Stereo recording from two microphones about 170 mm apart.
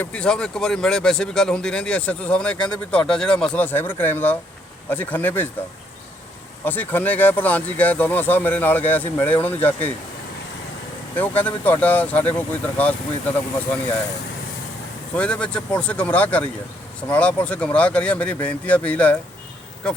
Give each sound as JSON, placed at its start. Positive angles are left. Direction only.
{"t": 0.0, "sound": "speech", "side_deg": 5}
{"t": 6.7, "sound": "speech", "side_deg": 10}
{"t": 11.2, "sound": "speech", "side_deg": 10}
{"t": 15.1, "sound": "speech", "side_deg": 5}